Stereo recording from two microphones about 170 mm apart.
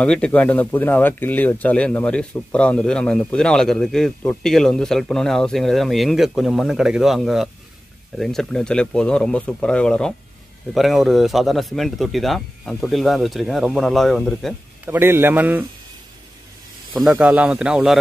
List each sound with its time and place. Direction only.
0.0 s speech: 5° left (ahead or behind)
14.9 s a man's voice: 15° right (ahead or behind)
16.9 s speech: 5° right (ahead or behind)